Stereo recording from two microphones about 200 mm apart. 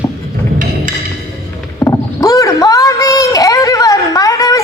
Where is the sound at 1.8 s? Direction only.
15° left (ahead or behind).